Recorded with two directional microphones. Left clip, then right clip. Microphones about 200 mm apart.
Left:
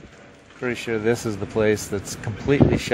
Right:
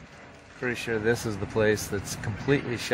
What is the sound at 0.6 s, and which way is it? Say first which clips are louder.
Speech: left 4 dB; 25° left (ahead or behind).